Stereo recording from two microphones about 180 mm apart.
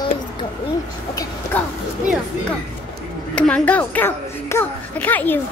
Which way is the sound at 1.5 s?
10° left (ahead or behind).